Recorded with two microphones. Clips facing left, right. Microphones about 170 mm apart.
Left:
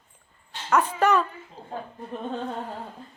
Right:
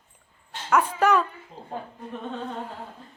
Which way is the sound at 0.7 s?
10° right (ahead or behind).